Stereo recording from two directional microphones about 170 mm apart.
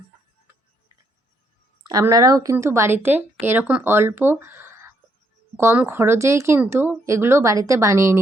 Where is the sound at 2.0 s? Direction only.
20° right (ahead or behind).